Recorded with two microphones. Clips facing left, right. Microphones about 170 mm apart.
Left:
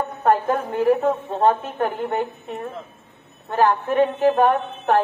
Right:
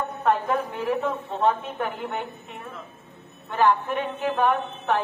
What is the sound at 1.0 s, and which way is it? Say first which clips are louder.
A woman's voice: left 5 dB; 40° left (ahead or behind).